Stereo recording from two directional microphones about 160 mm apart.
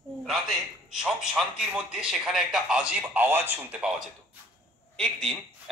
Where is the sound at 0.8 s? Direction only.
5° right (ahead or behind).